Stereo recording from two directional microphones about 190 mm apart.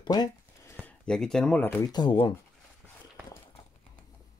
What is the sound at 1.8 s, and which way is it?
Speech, 20° left (ahead or behind).